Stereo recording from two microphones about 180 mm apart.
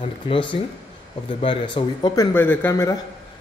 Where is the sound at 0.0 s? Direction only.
30° left (ahead or behind).